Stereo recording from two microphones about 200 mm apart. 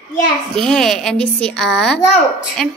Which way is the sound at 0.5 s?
Centre (ahead or behind).